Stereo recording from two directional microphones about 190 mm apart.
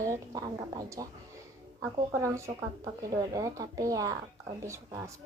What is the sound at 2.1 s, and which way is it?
A woman's voice, 15° right (ahead or behind).